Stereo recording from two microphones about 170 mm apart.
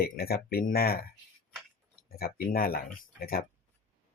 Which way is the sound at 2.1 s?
60° left (ahead or behind).